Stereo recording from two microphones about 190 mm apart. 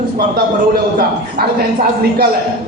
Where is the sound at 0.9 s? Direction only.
55° right (ahead or behind).